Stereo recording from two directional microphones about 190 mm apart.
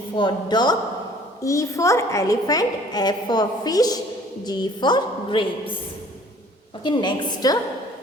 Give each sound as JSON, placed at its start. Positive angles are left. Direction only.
{"t": 0.2, "sound": "a woman's voice", "side_deg": 25}
{"t": 6.8, "sound": "a woman's voice", "side_deg": 25}